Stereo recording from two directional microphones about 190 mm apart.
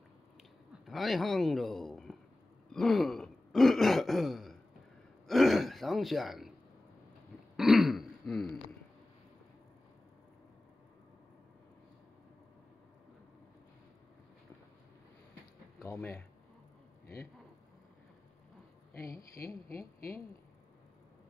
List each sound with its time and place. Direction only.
0.8 s a man's voice: centre (ahead or behind)
2.7 s throat clearing: centre (ahead or behind)
7.5 s throat clearing: centre (ahead or behind)
15.8 s speech: 15° left (ahead or behind)
19.7 s speech: 50° left (ahead or behind)